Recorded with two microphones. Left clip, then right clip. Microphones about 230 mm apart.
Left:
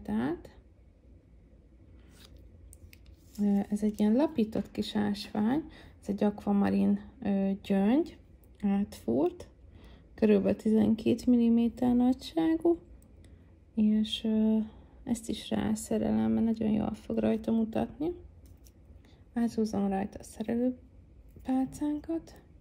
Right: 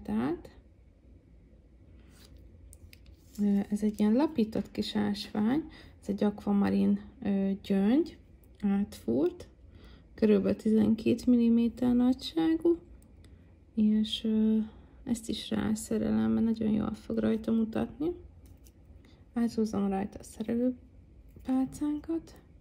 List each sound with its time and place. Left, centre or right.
0.0 s a sound: centre
2.9 s speech: centre
13.7 s speech: centre
19.3 s speech: centre